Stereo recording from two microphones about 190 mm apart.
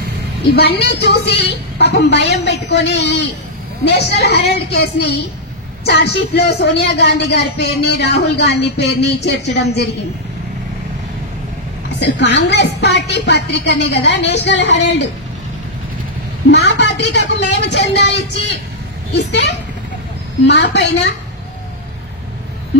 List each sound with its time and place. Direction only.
0.6 s a woman's voice: 60° left (ahead or behind)
12.0 s a woman's voice: 65° left (ahead or behind)
16.4 s a woman's voice: 65° left (ahead or behind)
19.1 s a woman's voice: 65° left (ahead or behind)